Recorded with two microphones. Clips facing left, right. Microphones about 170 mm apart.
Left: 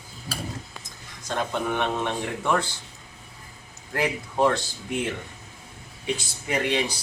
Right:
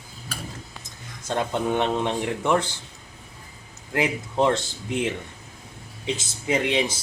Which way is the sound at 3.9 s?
20° right (ahead or behind).